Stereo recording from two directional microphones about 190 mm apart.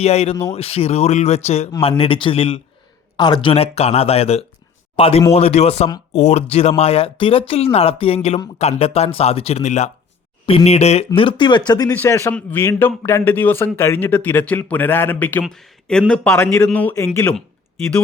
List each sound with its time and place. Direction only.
0.0 s a man's voice: 35° left (ahead or behind); by 17.4 s 5° left (ahead or behind)